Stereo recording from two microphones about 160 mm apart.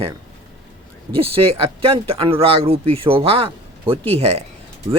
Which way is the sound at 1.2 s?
35° right (ahead or behind).